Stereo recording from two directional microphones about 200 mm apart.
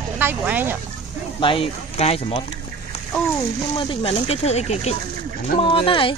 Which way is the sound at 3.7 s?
25° left (ahead or behind).